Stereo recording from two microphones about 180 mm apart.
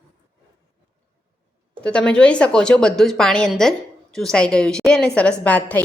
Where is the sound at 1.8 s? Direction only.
5° left (ahead or behind).